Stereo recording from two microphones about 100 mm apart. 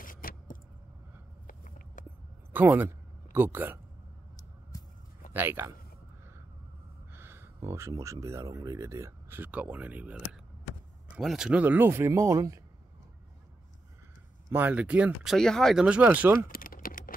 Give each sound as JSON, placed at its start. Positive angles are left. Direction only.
{"t": 2.5, "sound": "a man's voice", "side_deg": -20}
{"t": 4.7, "sound": "a sound", "side_deg": 35}
{"t": 5.3, "sound": "speech", "side_deg": -20}
{"t": 7.1, "sound": "speech", "side_deg": -25}
{"t": 9.4, "sound": "speech", "side_deg": -15}
{"t": 11.1, "sound": "speech", "side_deg": -5}
{"t": 11.6, "sound": "speech", "side_deg": -20}
{"t": 14.5, "sound": "speech", "side_deg": -20}
{"t": 15.2, "sound": "speech", "side_deg": 5}
{"t": 15.8, "sound": "speech", "side_deg": -15}